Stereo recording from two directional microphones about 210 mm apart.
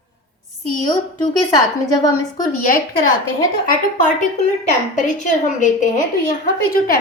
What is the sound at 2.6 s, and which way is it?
Speech, 40° left (ahead or behind).